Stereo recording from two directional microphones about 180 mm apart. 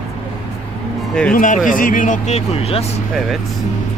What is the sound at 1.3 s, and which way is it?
Speech, 45° left (ahead or behind).